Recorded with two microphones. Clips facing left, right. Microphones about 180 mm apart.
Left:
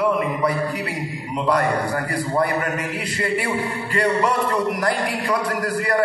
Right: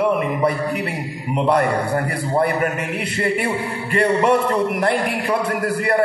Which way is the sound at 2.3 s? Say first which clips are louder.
Right 3 dB; 25° right (ahead or behind).